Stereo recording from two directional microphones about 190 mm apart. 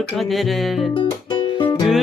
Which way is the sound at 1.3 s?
25° left (ahead or behind).